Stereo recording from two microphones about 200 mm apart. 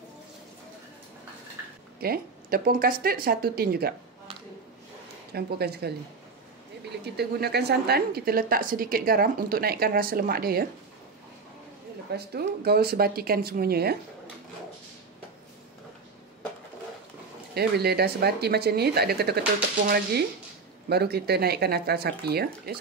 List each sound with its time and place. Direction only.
2.0 s a woman's voice: 50° right (ahead or behind)
5.3 s a woman's voice: 55° right (ahead or behind)
7.2 s a woman's voice: 55° right (ahead or behind)
12.1 s a woman's voice: 55° right (ahead or behind)
17.6 s a woman's voice: 50° right (ahead or behind)